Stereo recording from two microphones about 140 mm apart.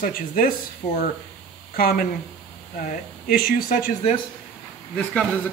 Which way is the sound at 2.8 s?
75° left (ahead or behind).